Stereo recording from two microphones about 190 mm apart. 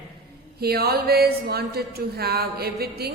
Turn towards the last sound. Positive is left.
turn(degrees=-55)  # may be behind; listen again after turning